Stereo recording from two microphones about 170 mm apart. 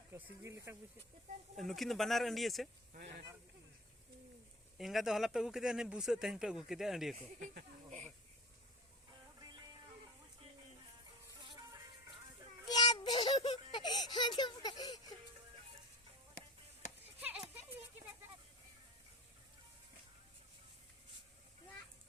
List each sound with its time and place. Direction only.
0.1 s speech: 15° right (ahead or behind)
1.5 s speech: centre (ahead or behind)
2.9 s speech: 60° right (ahead or behind)
4.8 s speech: centre (ahead or behind)
7.2 s speech: 45° right (ahead or behind)
11.4 s music: 25° right (ahead or behind)
12.7 s a sound: 25° left (ahead or behind)
17.2 s a sound: 5° right (ahead or behind)